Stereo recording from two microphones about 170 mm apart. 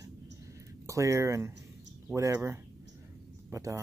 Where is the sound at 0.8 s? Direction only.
20° right (ahead or behind).